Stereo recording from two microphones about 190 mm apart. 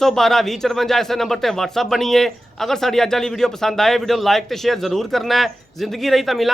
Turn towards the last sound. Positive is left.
turn(degrees=0)  # may be behind; listen again after turning